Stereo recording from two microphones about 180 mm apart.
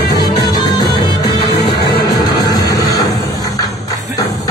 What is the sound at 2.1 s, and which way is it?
Music, 20° left (ahead or behind).